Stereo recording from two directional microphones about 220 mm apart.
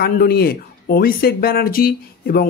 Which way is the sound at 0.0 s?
45° left (ahead or behind).